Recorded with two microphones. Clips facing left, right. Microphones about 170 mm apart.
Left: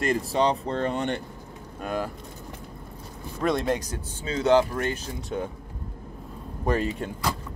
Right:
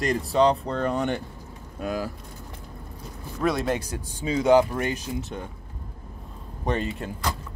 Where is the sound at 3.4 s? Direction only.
Centre (ahead or behind).